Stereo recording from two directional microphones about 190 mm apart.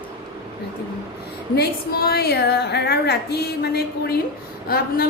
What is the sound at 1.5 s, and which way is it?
A woman's voice, 55° left (ahead or behind).